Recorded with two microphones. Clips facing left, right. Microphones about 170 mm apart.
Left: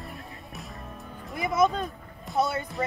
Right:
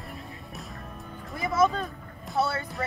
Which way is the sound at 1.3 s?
15° left (ahead or behind).